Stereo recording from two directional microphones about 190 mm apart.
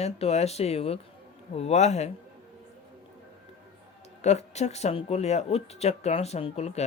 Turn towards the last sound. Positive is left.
turn(degrees=35)  # may be behind; listen again after turning